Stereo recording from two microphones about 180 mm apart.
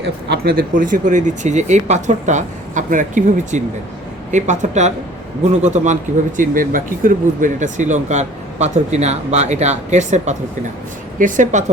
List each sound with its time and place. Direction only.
0.3 s speech: 55° right (ahead or behind)